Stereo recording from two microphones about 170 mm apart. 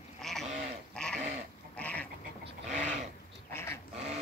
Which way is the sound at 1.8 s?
10° left (ahead or behind).